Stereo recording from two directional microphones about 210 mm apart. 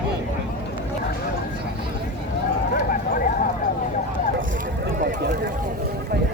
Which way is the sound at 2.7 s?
40° left (ahead or behind).